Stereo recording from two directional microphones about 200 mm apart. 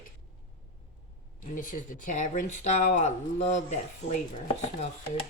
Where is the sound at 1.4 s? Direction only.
40° left (ahead or behind).